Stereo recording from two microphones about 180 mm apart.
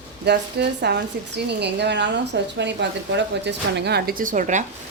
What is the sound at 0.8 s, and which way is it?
A woman's voice, 65° right (ahead or behind).